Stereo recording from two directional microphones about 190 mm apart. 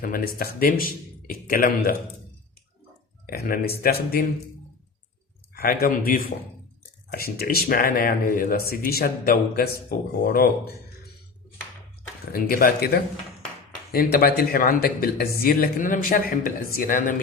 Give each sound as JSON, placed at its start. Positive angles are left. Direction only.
{"t": 0.0, "sound": "speech", "side_deg": 50}
{"t": 3.2, "sound": "speech", "side_deg": 50}
{"t": 5.5, "sound": "speech", "side_deg": 50}
{"t": 12.3, "sound": "speech", "side_deg": 50}